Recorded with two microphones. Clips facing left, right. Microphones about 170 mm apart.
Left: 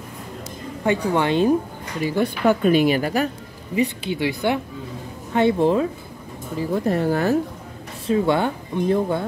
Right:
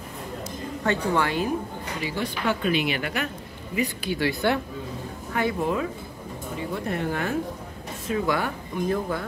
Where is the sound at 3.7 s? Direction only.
25° left (ahead or behind).